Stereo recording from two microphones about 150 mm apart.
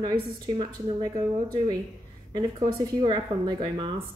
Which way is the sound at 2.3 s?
30° right (ahead or behind).